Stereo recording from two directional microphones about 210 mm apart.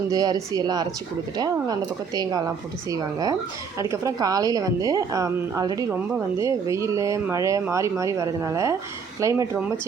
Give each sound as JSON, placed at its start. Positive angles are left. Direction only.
{"t": 0.1, "sound": "a woman's voice", "side_deg": -20}